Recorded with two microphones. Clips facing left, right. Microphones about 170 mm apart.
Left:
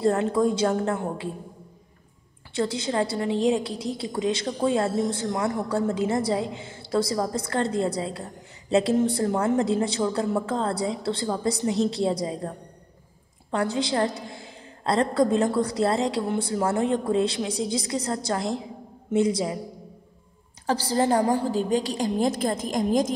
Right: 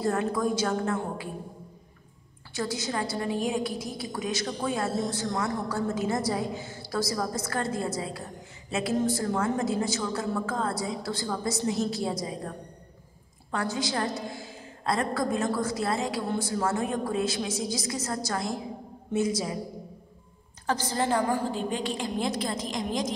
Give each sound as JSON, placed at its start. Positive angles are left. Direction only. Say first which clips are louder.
{"t": 0.0, "sound": "a woman's voice", "louder": "left 5 dB", "side_deg": 25}
{"t": 2.5, "sound": "a woman's voice", "louder": "left 5 dB", "side_deg": 30}
{"t": 13.5, "sound": "a woman's voice", "louder": "left 5 dB", "side_deg": 30}
{"t": 20.6, "sound": "a woman's voice", "louder": "left 5 dB", "side_deg": 30}